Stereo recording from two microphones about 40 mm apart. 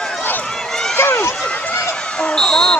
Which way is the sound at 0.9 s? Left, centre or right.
Left.